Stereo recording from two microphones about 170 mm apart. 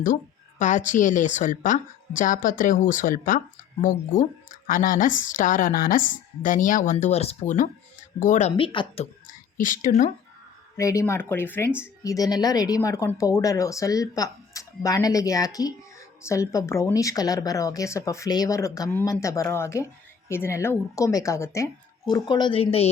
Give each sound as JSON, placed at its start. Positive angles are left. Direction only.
{"t": 0.6, "sound": "a woman's voice", "side_deg": 50}
{"t": 9.6, "sound": "a woman's voice", "side_deg": 50}
{"t": 10.8, "sound": "speech", "side_deg": 20}